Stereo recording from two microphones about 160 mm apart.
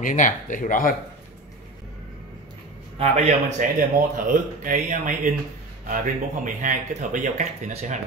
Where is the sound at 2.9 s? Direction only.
40° right (ahead or behind).